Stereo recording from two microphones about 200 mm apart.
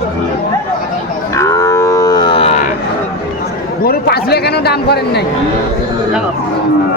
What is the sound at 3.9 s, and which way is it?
A man's voice, 50° left (ahead or behind).